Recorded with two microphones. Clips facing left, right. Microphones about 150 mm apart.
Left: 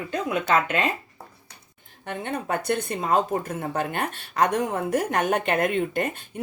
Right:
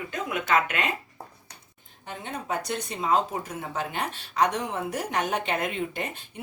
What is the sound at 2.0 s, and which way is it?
A woman's voice, 60° left (ahead or behind).